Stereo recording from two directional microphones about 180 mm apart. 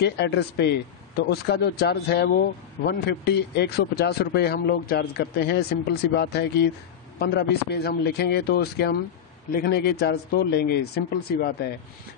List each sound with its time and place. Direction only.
0.0 s a man's voice: 65° left (ahead or behind)